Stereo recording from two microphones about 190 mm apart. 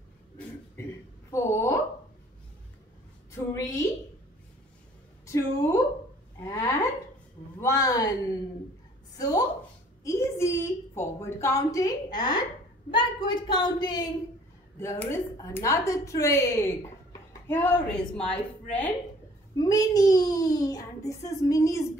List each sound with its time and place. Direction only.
1.3 s a sound: 15° left (ahead or behind)
3.3 s a woman's voice: 15° left (ahead or behind)
5.2 s a woman's voice: 15° left (ahead or behind)
7.6 s a sound: 15° left (ahead or behind)
12.9 s a child's voice: 25° left (ahead or behind); by 18.9 s 5° left (ahead or behind)
19.5 s a child's voice: 20° left (ahead or behind)